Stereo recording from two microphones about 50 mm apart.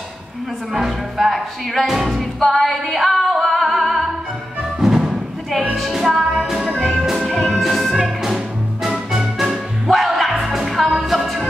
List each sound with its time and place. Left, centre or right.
0.7 s music: centre
4.8 s music: centre
6.8 s music: centre
7.1 s music: centre